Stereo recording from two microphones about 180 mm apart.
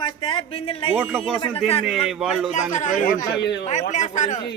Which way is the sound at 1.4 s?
30° left (ahead or behind).